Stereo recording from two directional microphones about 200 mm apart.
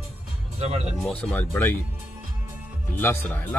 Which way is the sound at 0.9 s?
5° left (ahead or behind).